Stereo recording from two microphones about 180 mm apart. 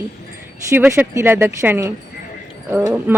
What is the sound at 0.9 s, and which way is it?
A woman's voice, 15° right (ahead or behind).